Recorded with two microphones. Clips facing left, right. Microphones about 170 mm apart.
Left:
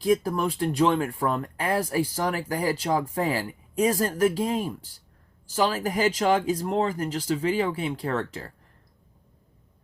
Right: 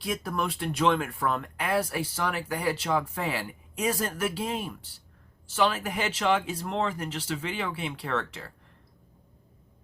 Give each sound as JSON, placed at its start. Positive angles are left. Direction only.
{"t": 0.0, "sound": "speech", "side_deg": 35}